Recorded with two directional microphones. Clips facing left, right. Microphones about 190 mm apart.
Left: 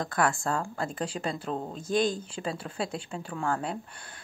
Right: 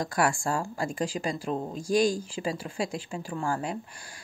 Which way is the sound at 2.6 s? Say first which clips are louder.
Right 2 dB; 10° right (ahead or behind).